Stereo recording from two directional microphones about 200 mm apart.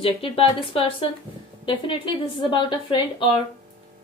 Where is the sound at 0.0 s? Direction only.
25° left (ahead or behind).